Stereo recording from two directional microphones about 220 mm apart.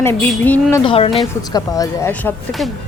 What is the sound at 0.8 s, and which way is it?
Speech, 25° left (ahead or behind).